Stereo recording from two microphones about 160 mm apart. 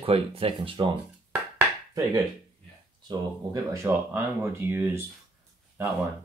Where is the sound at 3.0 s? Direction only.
20° right (ahead or behind).